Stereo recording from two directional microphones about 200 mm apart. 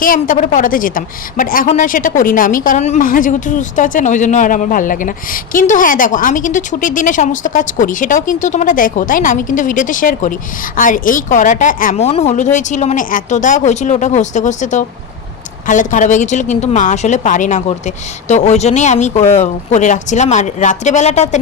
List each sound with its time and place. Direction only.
0.0 s a woman's voice: 45° left (ahead or behind)